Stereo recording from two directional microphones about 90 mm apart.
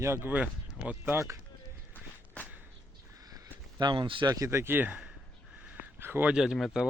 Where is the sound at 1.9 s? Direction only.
20° left (ahead or behind).